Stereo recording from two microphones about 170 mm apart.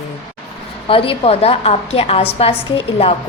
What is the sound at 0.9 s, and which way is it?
A woman's voice, 35° left (ahead or behind).